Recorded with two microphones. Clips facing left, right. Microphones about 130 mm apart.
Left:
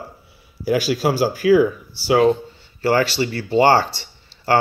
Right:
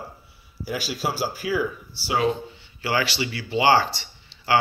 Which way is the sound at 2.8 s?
45° left (ahead or behind).